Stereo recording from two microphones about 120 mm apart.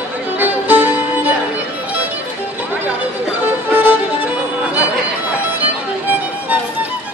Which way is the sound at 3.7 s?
15° right (ahead or behind).